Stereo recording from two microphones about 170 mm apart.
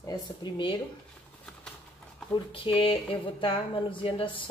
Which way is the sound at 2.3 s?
30° left (ahead or behind).